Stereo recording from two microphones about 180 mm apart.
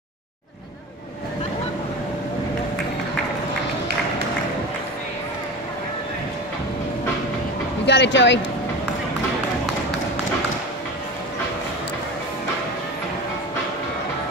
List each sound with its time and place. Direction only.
7.8 s speech: 80° left